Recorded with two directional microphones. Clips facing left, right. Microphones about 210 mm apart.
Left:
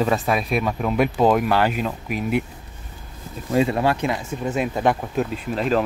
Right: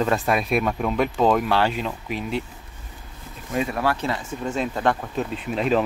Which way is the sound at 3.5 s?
25° left (ahead or behind).